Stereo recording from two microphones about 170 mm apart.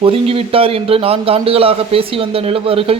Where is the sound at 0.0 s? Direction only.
35° right (ahead or behind).